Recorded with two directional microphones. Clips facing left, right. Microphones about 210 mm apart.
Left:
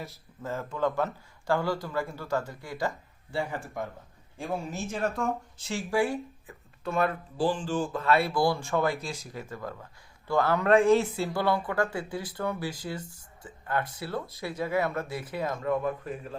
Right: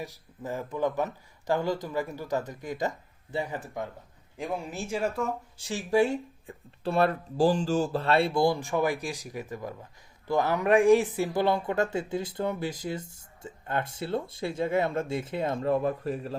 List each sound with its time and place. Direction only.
0.0 s speech: 15° right (ahead or behind); by 16.3 s 35° right (ahead or behind)